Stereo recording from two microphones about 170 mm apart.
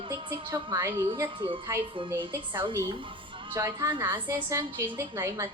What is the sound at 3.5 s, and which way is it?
A woman's voice, 15° right (ahead or behind).